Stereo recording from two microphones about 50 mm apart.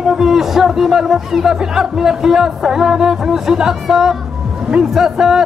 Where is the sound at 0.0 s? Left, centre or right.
Centre.